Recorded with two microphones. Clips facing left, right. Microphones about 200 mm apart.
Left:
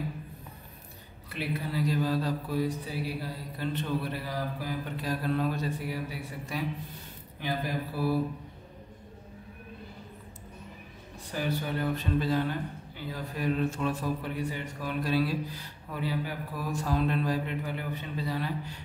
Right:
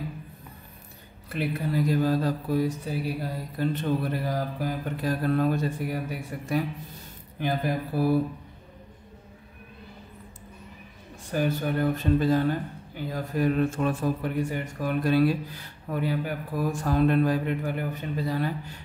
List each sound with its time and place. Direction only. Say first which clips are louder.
1.3 s speech: right 5 dB; 50° right (ahead or behind)
11.3 s speech: right 5 dB; 50° right (ahead or behind)